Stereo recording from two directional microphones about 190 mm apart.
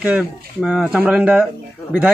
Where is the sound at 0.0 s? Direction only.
5° right (ahead or behind).